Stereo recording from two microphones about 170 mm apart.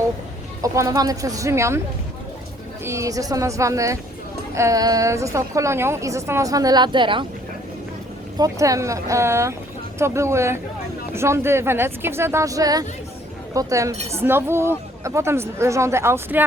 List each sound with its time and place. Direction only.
0.6 s a woman's voice: 20° right (ahead or behind)
2.8 s a woman's voice: 15° right (ahead or behind)
8.4 s a woman's voice: 20° right (ahead or behind)